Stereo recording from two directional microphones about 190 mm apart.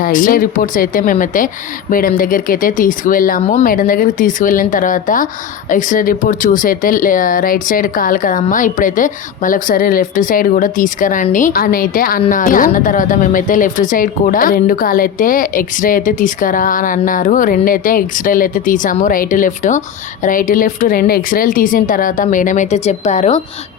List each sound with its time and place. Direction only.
0.0 s a woman's voice: 45° left (ahead or behind)
3.4 s speech: 35° left (ahead or behind)
3.7 s a woman's voice: 50° left (ahead or behind)